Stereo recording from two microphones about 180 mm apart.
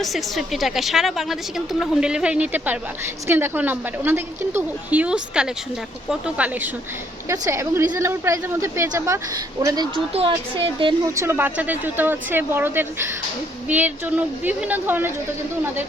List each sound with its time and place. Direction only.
0.0 s a woman's voice: centre (ahead or behind); by 11.1 s 30° right (ahead or behind)
11.1 s a woman's voice: 15° right (ahead or behind)